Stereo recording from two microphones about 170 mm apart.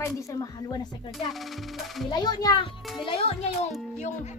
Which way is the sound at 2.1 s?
25° left (ahead or behind).